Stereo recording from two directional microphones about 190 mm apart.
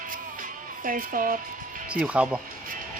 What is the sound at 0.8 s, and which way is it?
Speech, 45° right (ahead or behind).